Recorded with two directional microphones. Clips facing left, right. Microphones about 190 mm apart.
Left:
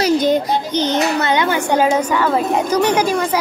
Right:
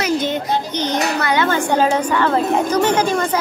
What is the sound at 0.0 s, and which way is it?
A child's voice, 35° left (ahead or behind).